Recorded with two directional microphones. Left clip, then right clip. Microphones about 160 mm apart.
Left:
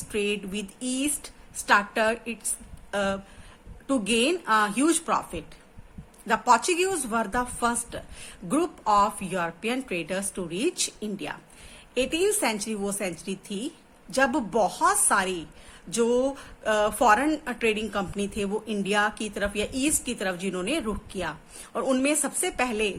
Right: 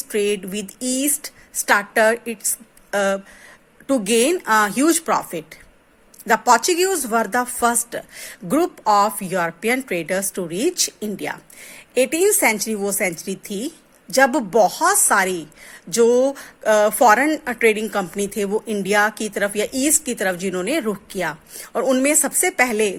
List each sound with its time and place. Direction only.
0.1 s speech: 45° right (ahead or behind)